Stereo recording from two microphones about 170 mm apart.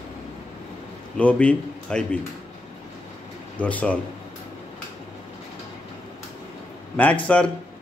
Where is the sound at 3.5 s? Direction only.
10° left (ahead or behind).